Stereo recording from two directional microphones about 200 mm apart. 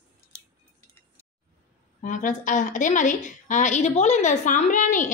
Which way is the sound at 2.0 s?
40° left (ahead or behind).